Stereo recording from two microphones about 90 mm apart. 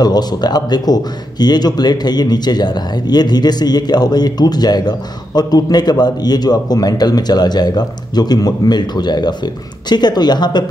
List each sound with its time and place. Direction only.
0.0 s a man's voice: 50° left (ahead or behind)